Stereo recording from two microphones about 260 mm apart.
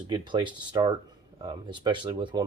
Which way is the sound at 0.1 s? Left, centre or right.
Centre.